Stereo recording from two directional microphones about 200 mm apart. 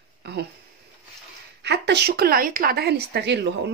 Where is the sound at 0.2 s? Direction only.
55° right (ahead or behind).